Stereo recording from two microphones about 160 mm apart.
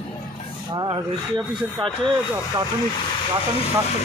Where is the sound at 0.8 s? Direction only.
30° right (ahead or behind).